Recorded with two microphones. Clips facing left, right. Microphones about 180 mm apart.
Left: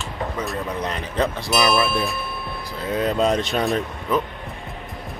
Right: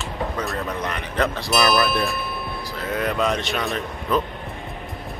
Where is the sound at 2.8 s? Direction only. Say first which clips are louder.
Left 3 dB; 25° left (ahead or behind).